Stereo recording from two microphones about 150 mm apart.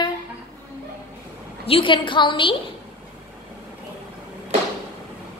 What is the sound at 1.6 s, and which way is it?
Speech, 35° left (ahead or behind).